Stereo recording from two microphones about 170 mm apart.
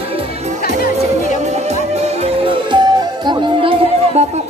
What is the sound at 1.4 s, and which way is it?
Music, 40° right (ahead or behind).